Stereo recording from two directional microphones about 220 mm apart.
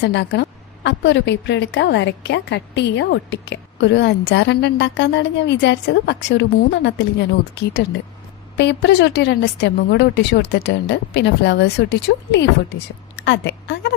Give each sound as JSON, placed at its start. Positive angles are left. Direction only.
{"t": 0.0, "sound": "a woman's voice", "side_deg": 50}